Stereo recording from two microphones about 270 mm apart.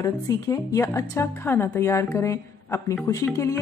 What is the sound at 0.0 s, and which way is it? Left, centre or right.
Speech, centre.